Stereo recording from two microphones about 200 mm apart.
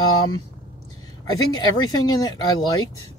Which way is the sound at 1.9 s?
20° left (ahead or behind).